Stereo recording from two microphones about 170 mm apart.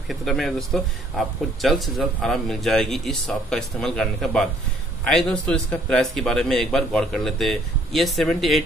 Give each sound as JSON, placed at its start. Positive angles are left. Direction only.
{"t": 0.1, "sound": "speech", "side_deg": 0}